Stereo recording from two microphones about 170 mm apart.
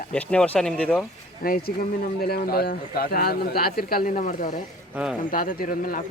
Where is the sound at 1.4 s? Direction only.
60° left (ahead or behind).